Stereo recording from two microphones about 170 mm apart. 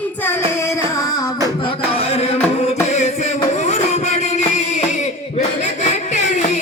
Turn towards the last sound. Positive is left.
turn(degrees=45)  # may be behind; listen again after turning